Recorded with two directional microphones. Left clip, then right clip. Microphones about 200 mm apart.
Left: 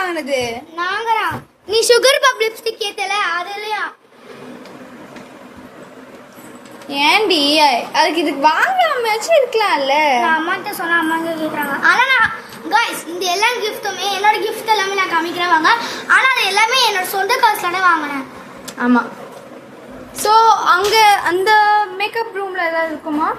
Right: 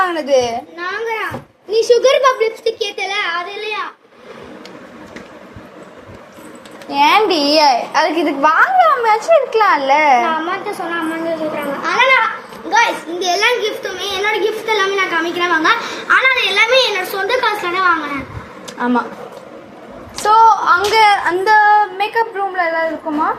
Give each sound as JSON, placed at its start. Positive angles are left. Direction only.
{"t": 0.0, "sound": "a child's voice", "side_deg": 0}
{"t": 0.8, "sound": "a sound", "side_deg": 30}
{"t": 1.7, "sound": "a child's voice", "side_deg": 50}
{"t": 2.6, "sound": "a child's voice", "side_deg": 30}
{"t": 6.8, "sound": "a child's voice", "side_deg": 15}
{"t": 10.2, "sound": "a child's voice", "side_deg": 45}
{"t": 13.3, "sound": "a child's voice", "side_deg": 5}
{"t": 18.6, "sound": "a sound", "side_deg": 15}
{"t": 20.4, "sound": "a child's voice", "side_deg": 25}